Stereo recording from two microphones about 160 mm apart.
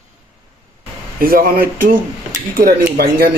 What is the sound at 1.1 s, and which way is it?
Speech, 65° right (ahead or behind).